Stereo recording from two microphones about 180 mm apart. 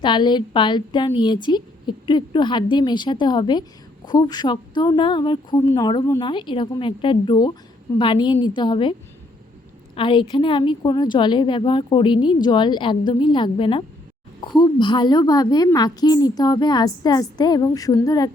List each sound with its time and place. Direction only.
0.0 s a woman's voice: 25° left (ahead or behind)